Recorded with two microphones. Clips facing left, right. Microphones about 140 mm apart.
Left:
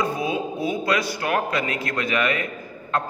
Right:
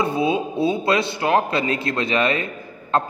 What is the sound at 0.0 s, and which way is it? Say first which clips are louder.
A man's voice: right 4 dB; 25° right (ahead or behind).